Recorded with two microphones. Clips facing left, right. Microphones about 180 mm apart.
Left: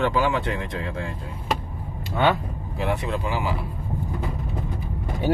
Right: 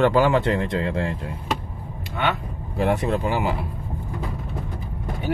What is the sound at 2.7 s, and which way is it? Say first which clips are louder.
Speech: right 5 dB; 50° right (ahead or behind).